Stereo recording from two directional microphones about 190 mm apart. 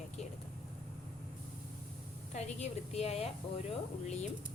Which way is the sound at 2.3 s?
35° left (ahead or behind).